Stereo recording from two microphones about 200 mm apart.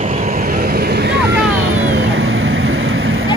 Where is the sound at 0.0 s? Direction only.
35° right (ahead or behind).